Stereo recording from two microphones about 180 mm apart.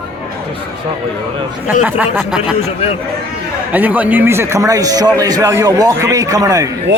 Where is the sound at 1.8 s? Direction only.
10° right (ahead or behind).